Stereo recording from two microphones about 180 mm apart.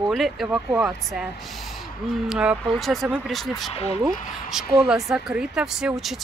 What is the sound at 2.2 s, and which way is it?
Speech, 5° right (ahead or behind).